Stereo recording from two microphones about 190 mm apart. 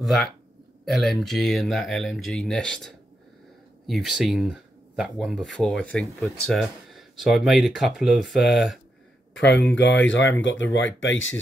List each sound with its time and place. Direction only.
0.0 s speech: centre (ahead or behind)
9.4 s speech: 65° left (ahead or behind); by 11.3 s 90° left